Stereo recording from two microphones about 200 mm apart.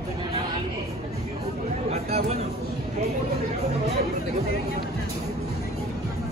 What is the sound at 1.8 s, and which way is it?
Speech, 35° right (ahead or behind).